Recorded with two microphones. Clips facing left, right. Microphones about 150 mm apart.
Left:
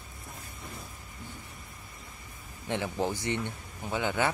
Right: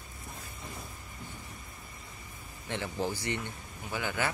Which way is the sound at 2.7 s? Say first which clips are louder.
Left 3 dB; 20° left (ahead or behind).